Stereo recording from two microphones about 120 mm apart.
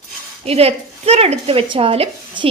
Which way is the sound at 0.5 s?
60° right (ahead or behind).